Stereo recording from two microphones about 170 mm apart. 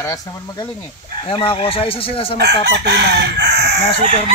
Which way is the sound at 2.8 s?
85° right.